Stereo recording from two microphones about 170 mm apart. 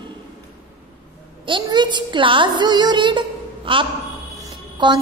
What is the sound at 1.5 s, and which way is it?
A woman's voice, 25° right (ahead or behind).